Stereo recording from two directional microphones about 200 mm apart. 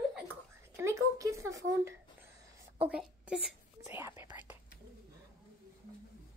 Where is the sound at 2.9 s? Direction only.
5° right (ahead or behind).